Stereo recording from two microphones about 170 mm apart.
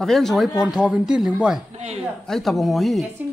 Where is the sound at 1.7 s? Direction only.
40° right (ahead or behind).